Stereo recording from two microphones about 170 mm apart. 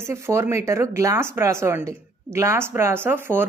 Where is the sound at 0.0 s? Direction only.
15° right (ahead or behind).